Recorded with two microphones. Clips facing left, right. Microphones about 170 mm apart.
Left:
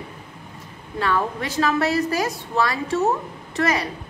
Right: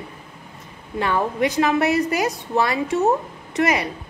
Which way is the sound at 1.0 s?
20° right (ahead or behind).